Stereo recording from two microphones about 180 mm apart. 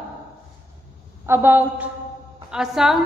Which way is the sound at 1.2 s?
10° right (ahead or behind).